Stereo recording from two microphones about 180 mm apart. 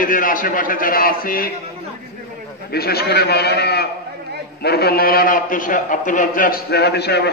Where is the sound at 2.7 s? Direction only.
60° left (ahead or behind).